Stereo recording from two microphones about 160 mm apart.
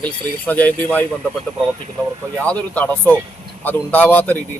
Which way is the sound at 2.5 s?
10° left (ahead or behind).